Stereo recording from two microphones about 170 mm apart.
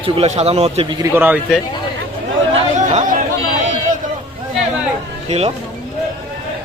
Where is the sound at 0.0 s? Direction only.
35° right (ahead or behind).